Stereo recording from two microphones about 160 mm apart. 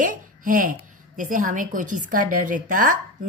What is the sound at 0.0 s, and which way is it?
Speech, 55° right (ahead or behind).